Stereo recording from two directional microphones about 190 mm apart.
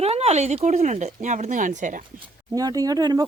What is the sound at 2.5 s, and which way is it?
Speech, 20° right (ahead or behind).